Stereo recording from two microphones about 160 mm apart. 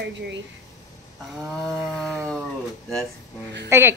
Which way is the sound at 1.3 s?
Centre (ahead or behind).